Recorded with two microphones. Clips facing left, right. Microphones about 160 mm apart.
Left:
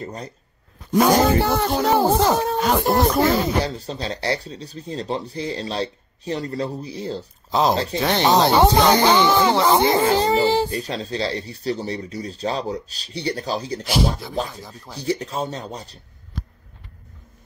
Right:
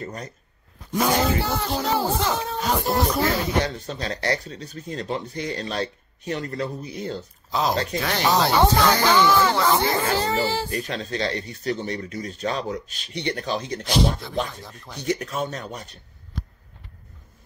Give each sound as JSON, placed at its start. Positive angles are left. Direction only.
{"t": 0.0, "sound": "speech", "side_deg": 30}
{"t": 1.1, "sound": "speech", "side_deg": 55}
{"t": 3.6, "sound": "a child's voice", "side_deg": 35}
{"t": 10.7, "sound": "speech", "side_deg": 35}
{"t": 13.8, "sound": "speech", "side_deg": 5}
{"t": 14.7, "sound": "speech", "side_deg": 30}